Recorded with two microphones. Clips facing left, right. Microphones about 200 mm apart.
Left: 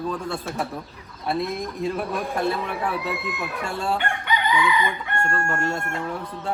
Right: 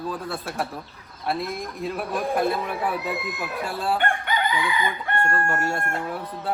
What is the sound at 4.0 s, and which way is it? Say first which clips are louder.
Chicken: right 1 dB; 50° right (ahead or behind).